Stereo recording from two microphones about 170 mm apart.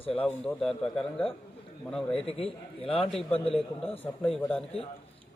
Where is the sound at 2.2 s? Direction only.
35° left (ahead or behind).